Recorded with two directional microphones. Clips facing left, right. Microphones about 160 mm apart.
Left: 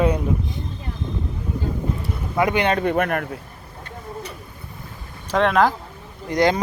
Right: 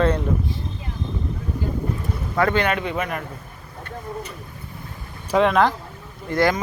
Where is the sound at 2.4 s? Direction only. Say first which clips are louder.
Even; 15° left (ahead or behind).